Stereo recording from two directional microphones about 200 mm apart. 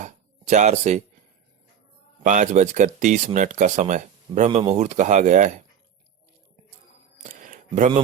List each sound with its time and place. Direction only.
0.5 s speech: 35° right (ahead or behind)
2.2 s speech: 40° right (ahead or behind)
7.2 s a sound: 35° right (ahead or behind)